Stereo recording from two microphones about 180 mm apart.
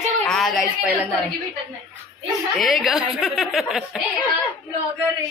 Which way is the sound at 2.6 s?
Centre (ahead or behind).